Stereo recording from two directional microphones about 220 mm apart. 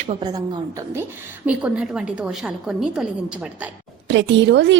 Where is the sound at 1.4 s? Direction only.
5° right (ahead or behind).